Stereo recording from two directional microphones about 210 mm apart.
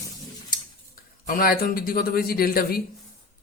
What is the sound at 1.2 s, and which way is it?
Speech, 40° left (ahead or behind).